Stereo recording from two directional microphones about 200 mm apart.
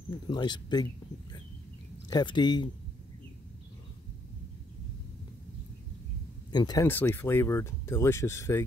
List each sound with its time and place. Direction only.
0.3 s speech: 20° left (ahead or behind)
2.0 s speech: 20° left (ahead or behind)
6.5 s speech: 20° left (ahead or behind)